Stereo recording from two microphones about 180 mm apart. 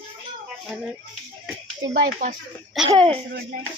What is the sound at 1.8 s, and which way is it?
Speech, 90° right.